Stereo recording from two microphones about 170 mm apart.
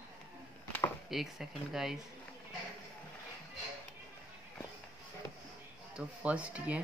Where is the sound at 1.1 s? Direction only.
Centre (ahead or behind).